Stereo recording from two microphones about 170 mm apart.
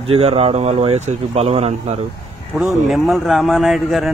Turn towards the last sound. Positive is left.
turn(degrees=0)  # may be behind; listen again after turning